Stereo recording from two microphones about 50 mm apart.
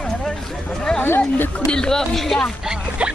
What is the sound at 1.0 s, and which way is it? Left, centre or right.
Speech, left.